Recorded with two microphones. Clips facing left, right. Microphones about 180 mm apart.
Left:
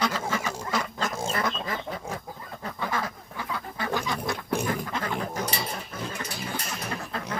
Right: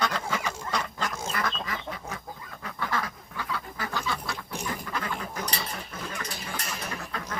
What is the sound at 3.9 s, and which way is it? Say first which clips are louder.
Duck: left 5 dB; 15° left (ahead or behind).